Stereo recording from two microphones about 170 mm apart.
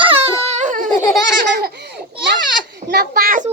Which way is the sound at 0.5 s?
50° right (ahead or behind).